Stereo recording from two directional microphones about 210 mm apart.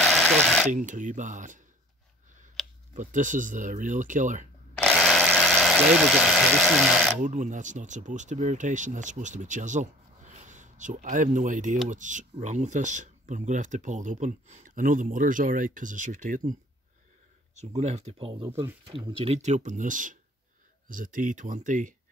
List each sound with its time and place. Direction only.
0.0 s a sound: centre (ahead or behind)
0.7 s speech: 35° right (ahead or behind)
2.9 s speech: 35° right (ahead or behind)
4.8 s electric toothbrush: centre (ahead or behind)
7.2 s speech: 35° right (ahead or behind)
17.6 s speech: 30° right (ahead or behind)